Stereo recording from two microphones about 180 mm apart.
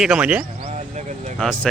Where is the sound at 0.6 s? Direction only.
40° right (ahead or behind).